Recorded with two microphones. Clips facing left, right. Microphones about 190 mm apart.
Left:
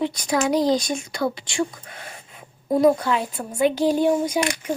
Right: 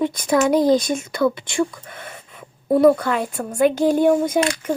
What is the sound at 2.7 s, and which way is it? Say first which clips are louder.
Speech: right 3 dB; 60° right (ahead or behind).